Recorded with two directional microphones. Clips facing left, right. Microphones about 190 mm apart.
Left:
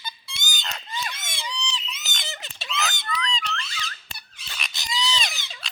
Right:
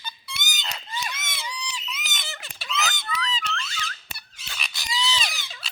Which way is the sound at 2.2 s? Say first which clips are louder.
Left 2 dB; 25° left (ahead or behind).